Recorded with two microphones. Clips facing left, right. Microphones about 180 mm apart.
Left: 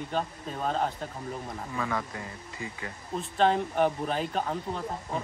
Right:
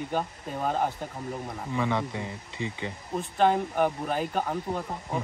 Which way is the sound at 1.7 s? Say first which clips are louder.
Right 5 dB; 20° right (ahead or behind).